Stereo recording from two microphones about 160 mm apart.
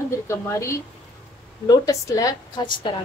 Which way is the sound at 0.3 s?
20° left (ahead or behind).